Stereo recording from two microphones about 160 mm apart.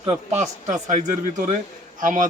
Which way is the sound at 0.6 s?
50° right (ahead or behind).